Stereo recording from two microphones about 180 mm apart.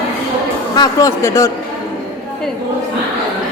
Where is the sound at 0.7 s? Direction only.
20° left (ahead or behind).